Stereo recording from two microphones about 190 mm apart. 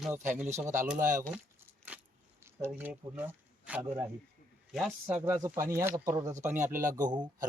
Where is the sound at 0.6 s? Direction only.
40° right (ahead or behind).